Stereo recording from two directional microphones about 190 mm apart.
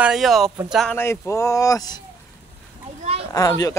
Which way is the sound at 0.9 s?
10° left (ahead or behind).